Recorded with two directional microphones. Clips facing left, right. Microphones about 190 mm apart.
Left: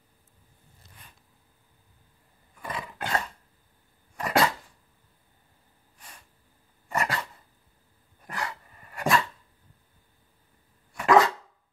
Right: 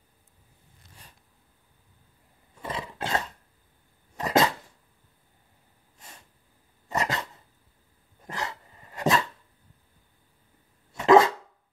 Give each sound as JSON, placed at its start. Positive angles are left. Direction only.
{"t": 2.5, "sound": "roar", "side_deg": -25}
{"t": 4.2, "sound": "dog", "side_deg": -20}
{"t": 5.9, "sound": "snort", "side_deg": -25}
{"t": 6.9, "sound": "dog", "side_deg": -20}
{"t": 10.9, "sound": "dog", "side_deg": -25}